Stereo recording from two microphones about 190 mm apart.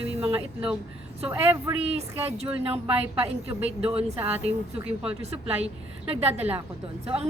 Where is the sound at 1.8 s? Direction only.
30° right (ahead or behind).